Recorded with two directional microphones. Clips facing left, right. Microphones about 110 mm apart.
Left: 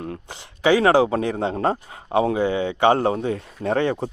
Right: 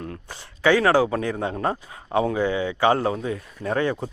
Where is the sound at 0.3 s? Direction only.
15° left (ahead or behind).